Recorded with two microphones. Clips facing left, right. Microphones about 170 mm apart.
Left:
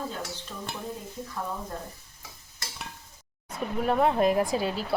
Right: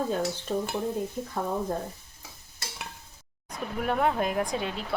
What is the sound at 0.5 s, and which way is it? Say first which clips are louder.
Stir: right 11 dB; 55° right (ahead or behind).